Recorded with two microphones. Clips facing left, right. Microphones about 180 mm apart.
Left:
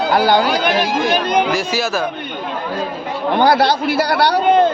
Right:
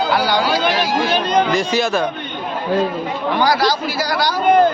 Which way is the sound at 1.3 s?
10° left (ahead or behind).